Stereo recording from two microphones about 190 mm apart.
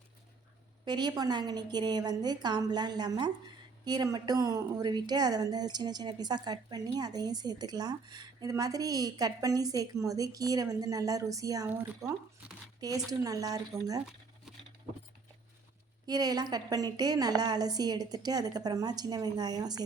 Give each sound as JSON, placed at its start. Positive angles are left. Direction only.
{"t": 0.9, "sound": "a woman's voice", "side_deg": -20}
{"t": 14.0, "sound": "a sound", "side_deg": 0}
{"t": 16.0, "sound": "a woman's voice", "side_deg": -20}